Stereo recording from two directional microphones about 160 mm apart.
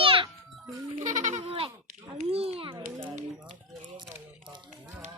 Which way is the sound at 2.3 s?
40° right (ahead or behind).